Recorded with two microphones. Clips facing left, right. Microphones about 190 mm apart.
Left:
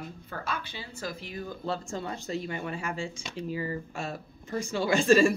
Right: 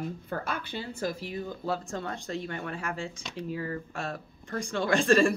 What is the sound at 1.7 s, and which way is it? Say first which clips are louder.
Speech: even; centre (ahead or behind).